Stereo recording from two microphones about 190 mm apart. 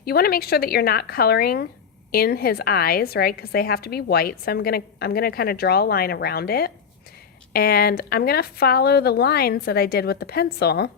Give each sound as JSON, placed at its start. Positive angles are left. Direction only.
{"t": 0.0, "sound": "a woman's voice", "side_deg": 55}